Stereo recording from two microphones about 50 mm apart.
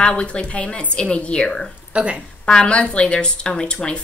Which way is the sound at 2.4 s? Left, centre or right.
Centre.